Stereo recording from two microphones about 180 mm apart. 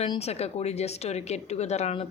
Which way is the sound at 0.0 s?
30° left (ahead or behind).